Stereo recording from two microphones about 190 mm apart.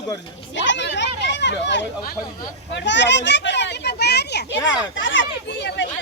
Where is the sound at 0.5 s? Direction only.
70° left (ahead or behind).